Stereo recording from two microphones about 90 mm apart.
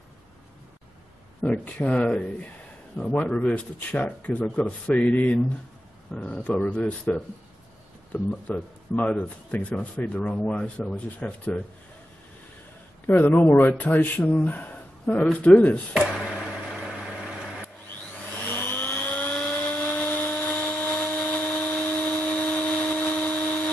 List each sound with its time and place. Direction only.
1.4 s speech: 15° left (ahead or behind)
13.0 s speech: 20° left (ahead or behind)
16.3 s vehicle: centre (ahead or behind)
18.5 s a sound: 20° left (ahead or behind)